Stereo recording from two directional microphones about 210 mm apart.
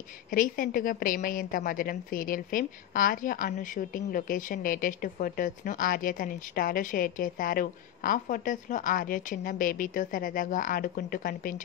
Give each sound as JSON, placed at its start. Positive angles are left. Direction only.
{"t": 0.3, "sound": "a woman's voice", "side_deg": 40}